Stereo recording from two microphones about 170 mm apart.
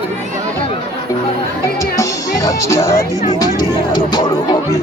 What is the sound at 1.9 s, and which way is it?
Music, 20° left (ahead or behind).